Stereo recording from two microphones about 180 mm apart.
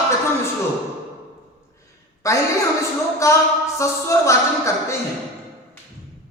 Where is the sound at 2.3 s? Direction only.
15° left (ahead or behind).